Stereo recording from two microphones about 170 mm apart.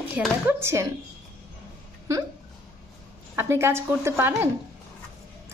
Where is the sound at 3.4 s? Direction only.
15° right (ahead or behind).